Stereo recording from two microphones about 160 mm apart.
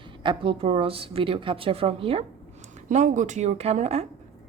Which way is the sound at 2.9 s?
50° right (ahead or behind).